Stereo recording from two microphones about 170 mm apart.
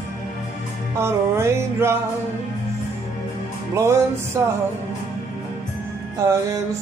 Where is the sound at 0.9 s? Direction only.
15° right (ahead or behind).